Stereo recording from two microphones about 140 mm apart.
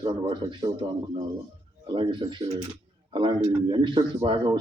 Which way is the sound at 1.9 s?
35° right (ahead or behind).